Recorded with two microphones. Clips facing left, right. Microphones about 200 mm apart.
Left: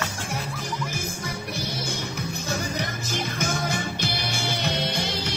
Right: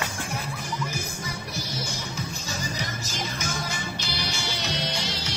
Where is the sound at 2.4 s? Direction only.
55° left (ahead or behind).